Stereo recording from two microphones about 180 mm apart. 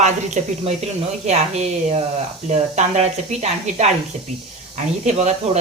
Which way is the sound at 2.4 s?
40° right (ahead or behind).